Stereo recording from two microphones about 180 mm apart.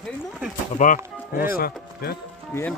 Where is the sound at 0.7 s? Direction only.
45° left (ahead or behind).